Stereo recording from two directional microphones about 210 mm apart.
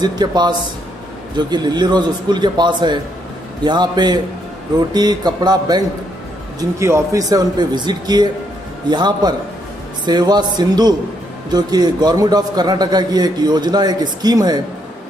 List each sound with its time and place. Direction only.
0.0 s a man's voice: 20° right (ahead or behind)